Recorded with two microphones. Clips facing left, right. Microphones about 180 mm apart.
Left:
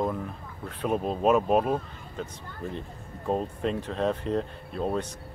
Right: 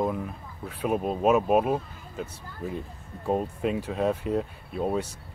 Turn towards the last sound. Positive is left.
turn(degrees=-5)  # may be behind; listen again after turning